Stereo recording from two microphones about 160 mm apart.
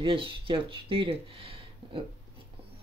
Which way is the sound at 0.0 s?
30° right (ahead or behind).